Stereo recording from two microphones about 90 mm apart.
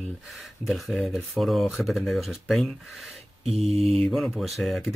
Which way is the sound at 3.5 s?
90° right.